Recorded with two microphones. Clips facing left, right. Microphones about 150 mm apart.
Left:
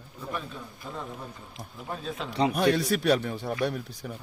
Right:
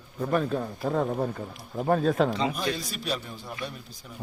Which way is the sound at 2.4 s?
65° left (ahead or behind).